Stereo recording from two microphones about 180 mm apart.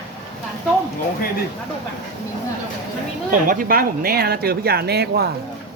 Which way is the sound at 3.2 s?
50° right (ahead or behind).